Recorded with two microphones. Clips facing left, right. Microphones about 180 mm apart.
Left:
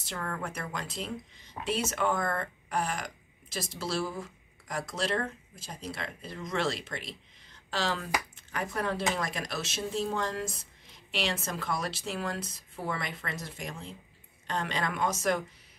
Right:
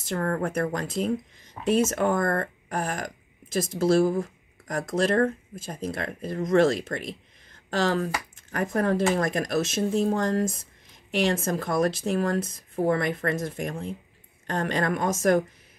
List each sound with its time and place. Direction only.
0.0 s speech: 45° right (ahead or behind)